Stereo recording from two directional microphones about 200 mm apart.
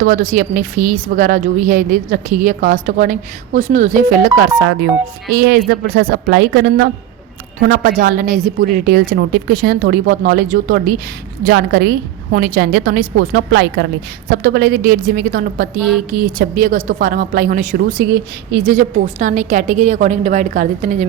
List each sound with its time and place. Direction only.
0.0 s a woman's voice: 40° right (ahead or behind); by 4.9 s 60° right (ahead or behind)
5.3 s a woman's voice: 50° right (ahead or behind)
18.7 s a woman's voice: 40° right (ahead or behind)